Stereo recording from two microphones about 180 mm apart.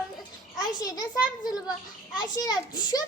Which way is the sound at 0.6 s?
20° left (ahead or behind).